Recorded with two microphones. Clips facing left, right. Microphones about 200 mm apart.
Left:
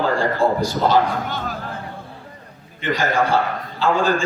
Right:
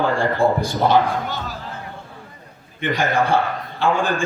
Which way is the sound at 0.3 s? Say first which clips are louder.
Even; 55° right (ahead or behind).